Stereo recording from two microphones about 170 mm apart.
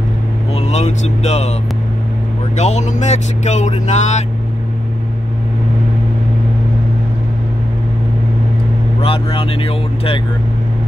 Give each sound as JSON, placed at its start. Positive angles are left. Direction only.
{"t": 0.6, "sound": "speech", "side_deg": 40}
{"t": 2.5, "sound": "speech", "side_deg": 40}
{"t": 9.0, "sound": "speech", "side_deg": 30}